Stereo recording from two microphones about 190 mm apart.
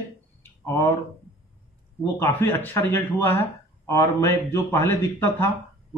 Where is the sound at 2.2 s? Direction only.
10° left (ahead or behind).